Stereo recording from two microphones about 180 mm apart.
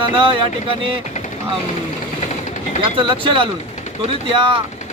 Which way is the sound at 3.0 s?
30° right (ahead or behind).